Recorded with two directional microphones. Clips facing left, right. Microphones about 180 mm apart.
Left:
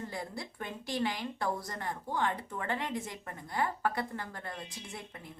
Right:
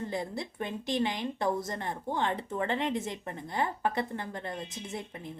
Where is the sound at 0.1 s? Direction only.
20° right (ahead or behind).